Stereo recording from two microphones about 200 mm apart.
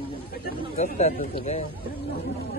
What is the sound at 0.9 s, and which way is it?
Speech, 30° left (ahead or behind).